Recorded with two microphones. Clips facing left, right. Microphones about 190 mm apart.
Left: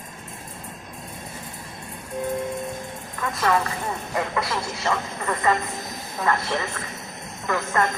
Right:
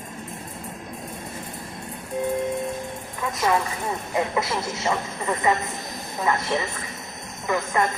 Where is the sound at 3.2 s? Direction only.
15° right (ahead or behind).